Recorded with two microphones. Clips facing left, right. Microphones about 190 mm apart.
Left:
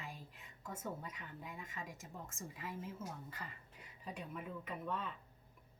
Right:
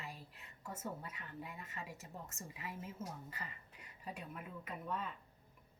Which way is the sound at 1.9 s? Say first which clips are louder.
Even; 70° right (ahead or behind).